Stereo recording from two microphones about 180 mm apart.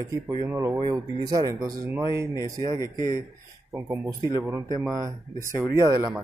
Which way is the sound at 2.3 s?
20° left (ahead or behind).